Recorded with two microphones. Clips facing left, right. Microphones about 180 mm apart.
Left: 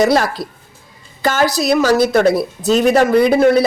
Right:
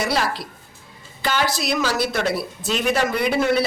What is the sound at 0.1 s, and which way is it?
A woman's voice, 45° left (ahead or behind).